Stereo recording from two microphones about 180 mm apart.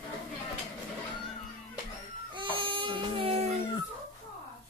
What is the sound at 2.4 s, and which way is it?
Baby cry, 25° right (ahead or behind).